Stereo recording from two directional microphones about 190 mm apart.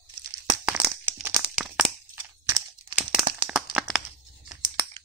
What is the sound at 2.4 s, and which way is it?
Crunch, 20° right (ahead or behind).